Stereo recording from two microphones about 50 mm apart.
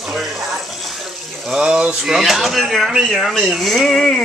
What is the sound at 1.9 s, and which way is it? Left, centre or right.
Speech, centre.